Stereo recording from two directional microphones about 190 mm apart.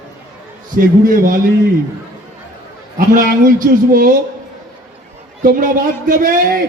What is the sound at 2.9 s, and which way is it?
Speech, 45° right (ahead or behind).